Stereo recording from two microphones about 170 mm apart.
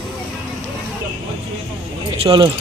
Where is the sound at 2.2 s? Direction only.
30° right (ahead or behind).